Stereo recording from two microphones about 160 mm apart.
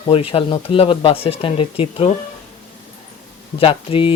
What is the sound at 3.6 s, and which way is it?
Speech, 35° left (ahead or behind).